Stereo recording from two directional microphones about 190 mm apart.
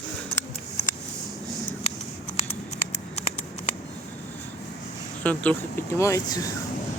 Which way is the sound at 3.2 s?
35° left (ahead or behind).